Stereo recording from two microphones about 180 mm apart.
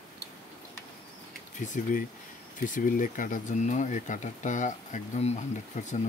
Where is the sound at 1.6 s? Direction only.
45° left (ahead or behind).